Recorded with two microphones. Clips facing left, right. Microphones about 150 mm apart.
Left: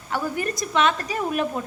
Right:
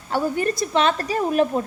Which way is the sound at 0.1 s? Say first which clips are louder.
Right 4 dB; 30° right (ahead or behind).